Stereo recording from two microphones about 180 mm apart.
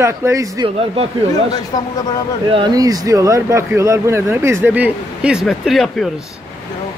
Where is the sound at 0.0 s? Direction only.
15° right (ahead or behind).